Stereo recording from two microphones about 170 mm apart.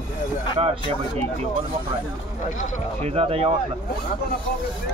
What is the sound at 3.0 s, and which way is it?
Speech, 35° right (ahead or behind).